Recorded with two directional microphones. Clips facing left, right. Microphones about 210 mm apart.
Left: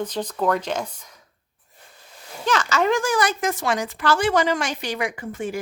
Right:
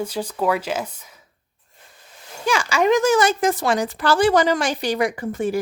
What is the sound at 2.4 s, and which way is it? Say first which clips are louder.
Speech: right 2 dB; 10° right (ahead or behind).